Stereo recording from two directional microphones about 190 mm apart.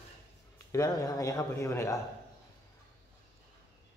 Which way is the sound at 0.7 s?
20° left (ahead or behind).